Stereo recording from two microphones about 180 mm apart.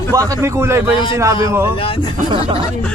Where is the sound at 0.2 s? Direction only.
15° right (ahead or behind).